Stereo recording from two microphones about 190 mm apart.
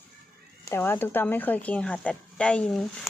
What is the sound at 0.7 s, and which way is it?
A woman's voice, 10° left (ahead or behind).